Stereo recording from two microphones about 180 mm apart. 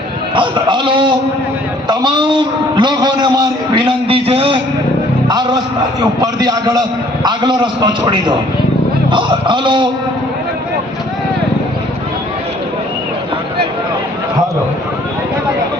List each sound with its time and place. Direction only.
0.3 s a man's voice: 25° right (ahead or behind)